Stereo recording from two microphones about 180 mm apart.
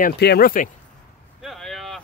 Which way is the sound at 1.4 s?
Centre (ahead or behind).